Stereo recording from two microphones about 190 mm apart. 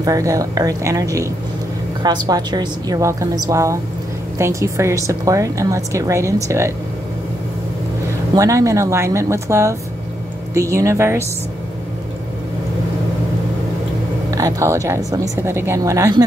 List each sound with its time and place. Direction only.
0.0 s a woman's voice: 15° right (ahead or behind)
8.4 s a woman's voice: 15° right (ahead or behind)
14.3 s a woman's voice: 15° right (ahead or behind)